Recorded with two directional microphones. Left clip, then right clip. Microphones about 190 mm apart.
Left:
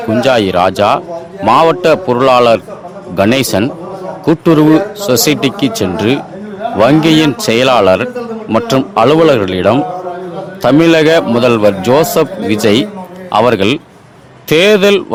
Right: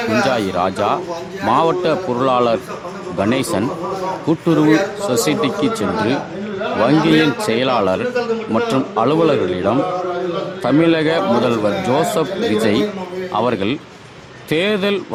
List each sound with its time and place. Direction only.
0.2 s a man's voice: 45° left (ahead or behind)